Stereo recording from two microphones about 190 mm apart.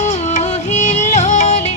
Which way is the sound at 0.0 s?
35° left (ahead or behind).